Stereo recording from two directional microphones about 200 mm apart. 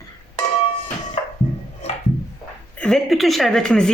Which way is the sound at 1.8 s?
30° left (ahead or behind).